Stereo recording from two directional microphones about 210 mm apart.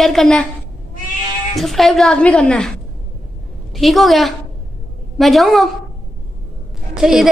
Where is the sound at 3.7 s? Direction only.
Centre (ahead or behind).